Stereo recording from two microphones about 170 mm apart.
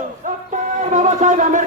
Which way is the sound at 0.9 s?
45° right (ahead or behind).